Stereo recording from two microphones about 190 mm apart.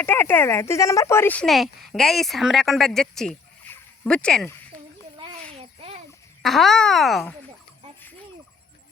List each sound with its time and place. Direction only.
0.0 s speech: 10° left (ahead or behind)
3.7 s fowl: 5° left (ahead or behind)
5.1 s a sound: 30° right (ahead or behind)
6.4 s speech: centre (ahead or behind)